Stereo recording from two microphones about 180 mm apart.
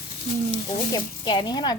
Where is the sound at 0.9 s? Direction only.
25° left (ahead or behind).